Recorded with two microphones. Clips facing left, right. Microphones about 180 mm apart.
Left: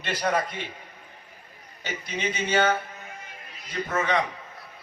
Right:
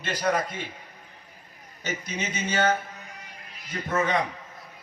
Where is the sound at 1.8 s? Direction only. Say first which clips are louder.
Left 1 dB; 45° right (ahead or behind).